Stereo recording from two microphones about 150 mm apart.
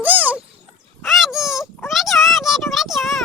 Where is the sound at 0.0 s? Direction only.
10° right (ahead or behind).